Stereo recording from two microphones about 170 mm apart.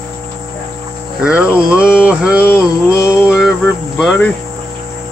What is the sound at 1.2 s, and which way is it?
Music, 10° right (ahead or behind).